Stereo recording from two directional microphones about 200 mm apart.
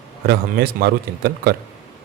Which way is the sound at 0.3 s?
50° right (ahead or behind).